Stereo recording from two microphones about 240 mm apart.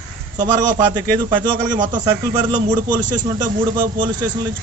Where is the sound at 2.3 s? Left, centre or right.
Centre.